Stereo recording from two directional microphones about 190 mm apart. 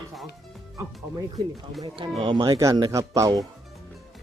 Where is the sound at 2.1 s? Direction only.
25° right (ahead or behind).